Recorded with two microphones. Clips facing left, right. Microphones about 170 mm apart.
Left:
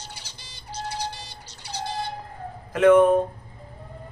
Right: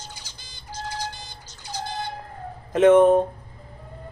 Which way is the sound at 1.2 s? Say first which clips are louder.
Right 1 dB; 65° left (ahead or behind).